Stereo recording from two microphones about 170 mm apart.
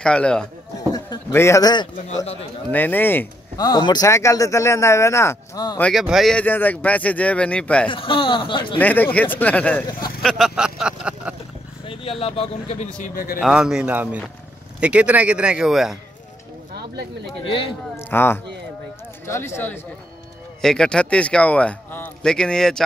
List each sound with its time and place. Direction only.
0.0 s speech: 5° left (ahead or behind)
0.7 s speech: 20° left (ahead or behind)
2.7 s speech: 10° left (ahead or behind)
5.8 s speech: centre (ahead or behind)
7.9 s a man's voice: 30° left (ahead or behind)
8.7 s speech: 10° left (ahead or behind)
10.2 s a sound: centre (ahead or behind)
11.8 s speech: 30° left (ahead or behind)
13.0 s a man's voice: 60° left (ahead or behind)
13.4 s speech: 5° right (ahead or behind)
17.9 s a sound: 15° left (ahead or behind)
19.2 s speech: 15° left (ahead or behind)